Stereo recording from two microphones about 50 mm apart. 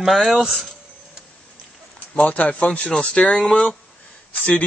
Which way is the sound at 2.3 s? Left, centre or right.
Left.